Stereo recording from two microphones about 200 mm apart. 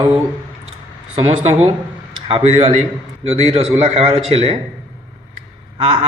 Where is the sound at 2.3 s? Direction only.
30° right (ahead or behind).